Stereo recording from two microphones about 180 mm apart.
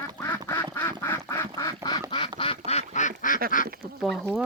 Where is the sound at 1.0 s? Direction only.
15° left (ahead or behind).